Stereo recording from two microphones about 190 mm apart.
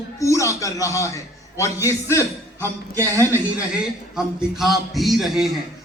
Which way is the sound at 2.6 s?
15° right (ahead or behind).